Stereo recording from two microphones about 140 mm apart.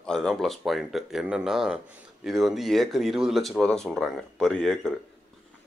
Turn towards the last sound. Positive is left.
turn(degrees=5)  # may be behind; listen again after turning